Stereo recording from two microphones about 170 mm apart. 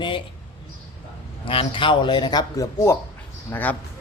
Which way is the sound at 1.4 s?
30° left (ahead or behind).